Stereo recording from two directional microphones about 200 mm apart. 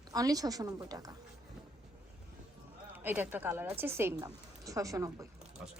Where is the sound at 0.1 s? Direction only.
20° right (ahead or behind).